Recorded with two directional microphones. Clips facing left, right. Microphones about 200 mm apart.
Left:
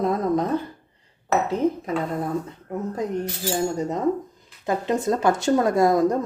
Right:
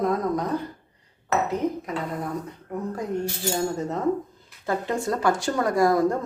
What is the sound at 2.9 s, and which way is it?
Speech, 20° left (ahead or behind).